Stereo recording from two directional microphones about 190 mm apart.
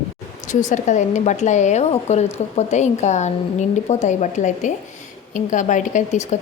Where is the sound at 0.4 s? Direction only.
40° left (ahead or behind).